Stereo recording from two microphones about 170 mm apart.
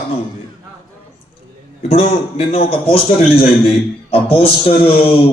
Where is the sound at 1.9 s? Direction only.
35° left (ahead or behind).